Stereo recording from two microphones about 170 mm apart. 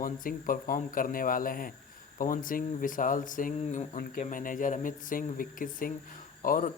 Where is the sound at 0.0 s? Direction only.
55° left (ahead or behind).